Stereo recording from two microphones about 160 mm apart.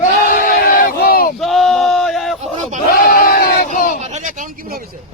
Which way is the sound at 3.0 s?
65° left (ahead or behind).